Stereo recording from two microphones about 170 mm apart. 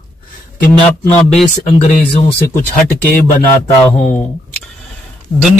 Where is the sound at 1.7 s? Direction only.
45° left (ahead or behind).